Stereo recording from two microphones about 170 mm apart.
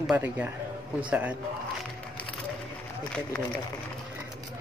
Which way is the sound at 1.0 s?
10° right (ahead or behind).